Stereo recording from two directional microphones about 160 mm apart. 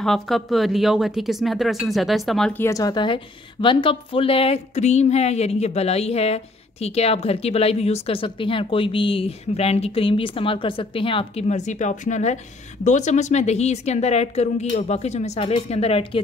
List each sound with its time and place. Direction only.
0.0 s speech: centre (ahead or behind)
2.6 s a woman's voice: 20° left (ahead or behind)